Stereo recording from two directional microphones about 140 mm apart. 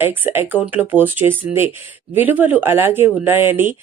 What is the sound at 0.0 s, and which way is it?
Speech, 15° right (ahead or behind).